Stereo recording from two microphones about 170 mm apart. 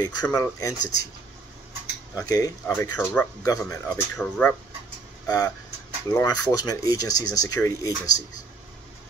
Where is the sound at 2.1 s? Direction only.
20° left (ahead or behind).